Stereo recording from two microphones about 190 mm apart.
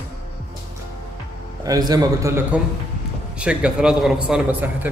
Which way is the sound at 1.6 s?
20° right (ahead or behind).